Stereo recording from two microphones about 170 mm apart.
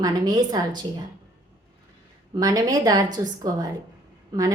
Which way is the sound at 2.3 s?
20° right (ahead or behind).